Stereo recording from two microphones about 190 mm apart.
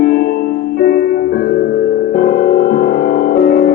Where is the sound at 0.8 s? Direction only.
50° left (ahead or behind).